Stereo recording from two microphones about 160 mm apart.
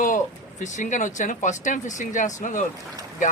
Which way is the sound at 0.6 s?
50° left (ahead or behind).